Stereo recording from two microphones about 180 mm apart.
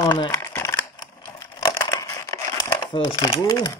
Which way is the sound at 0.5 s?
15° left (ahead or behind).